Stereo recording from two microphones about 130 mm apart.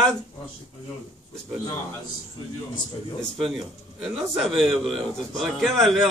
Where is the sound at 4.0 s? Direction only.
Centre (ahead or behind).